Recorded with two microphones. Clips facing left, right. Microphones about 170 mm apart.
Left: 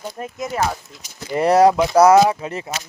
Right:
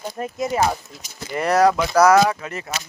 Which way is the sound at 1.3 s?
30° left (ahead or behind).